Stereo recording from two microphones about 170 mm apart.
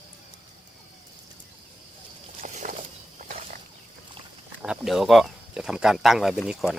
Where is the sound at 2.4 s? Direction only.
50° right (ahead or behind).